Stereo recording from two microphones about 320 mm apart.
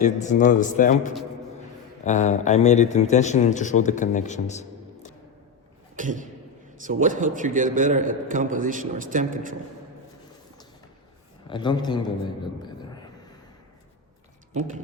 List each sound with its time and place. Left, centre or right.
0.0 s a man's voice: left
6.0 s a man's voice: right
11.4 s a man's voice: centre